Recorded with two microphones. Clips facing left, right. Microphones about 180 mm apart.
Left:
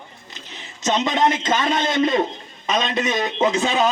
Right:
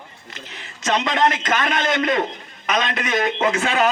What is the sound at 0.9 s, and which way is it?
A man's voice, 25° left (ahead or behind).